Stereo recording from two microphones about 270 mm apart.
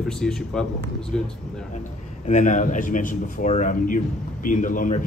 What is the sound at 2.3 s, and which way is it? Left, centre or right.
A man's voice, left.